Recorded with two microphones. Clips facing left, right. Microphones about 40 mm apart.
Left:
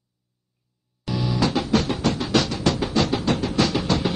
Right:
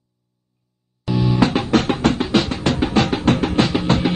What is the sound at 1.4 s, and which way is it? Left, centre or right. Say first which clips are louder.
Music: right 3 dB; right.